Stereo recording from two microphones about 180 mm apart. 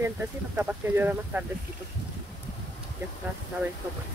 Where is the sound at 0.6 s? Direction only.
10° right (ahead or behind).